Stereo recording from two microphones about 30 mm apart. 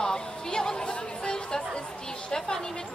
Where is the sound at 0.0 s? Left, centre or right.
Left.